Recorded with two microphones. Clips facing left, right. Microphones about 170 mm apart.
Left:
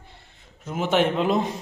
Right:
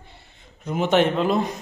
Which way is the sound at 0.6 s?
5° left (ahead or behind).